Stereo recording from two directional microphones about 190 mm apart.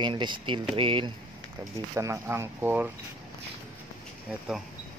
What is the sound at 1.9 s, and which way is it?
Speech, 15° right (ahead or behind).